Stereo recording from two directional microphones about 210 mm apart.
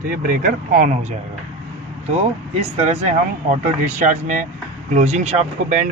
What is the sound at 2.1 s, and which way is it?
Speech, 30° right (ahead or behind).